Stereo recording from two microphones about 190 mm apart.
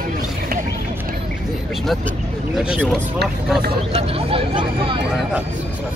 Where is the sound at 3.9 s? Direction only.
30° right (ahead or behind).